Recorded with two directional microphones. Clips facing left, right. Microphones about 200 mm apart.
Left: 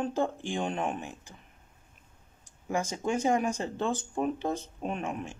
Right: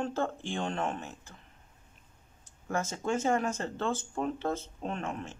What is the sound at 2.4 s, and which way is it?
Speech, 15° left (ahead or behind).